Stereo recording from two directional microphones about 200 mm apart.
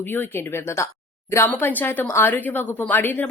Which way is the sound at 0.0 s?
10° left (ahead or behind).